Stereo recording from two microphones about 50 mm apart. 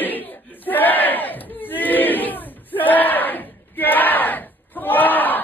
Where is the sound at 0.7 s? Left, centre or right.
Left.